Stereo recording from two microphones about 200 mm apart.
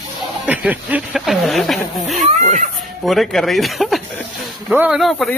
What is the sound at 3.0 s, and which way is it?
Speech, centre (ahead or behind).